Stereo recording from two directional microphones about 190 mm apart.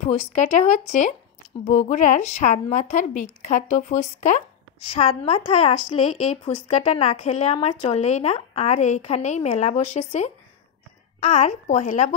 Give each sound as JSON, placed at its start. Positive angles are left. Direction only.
{"t": 0.0, "sound": "a woman's voice", "side_deg": 35}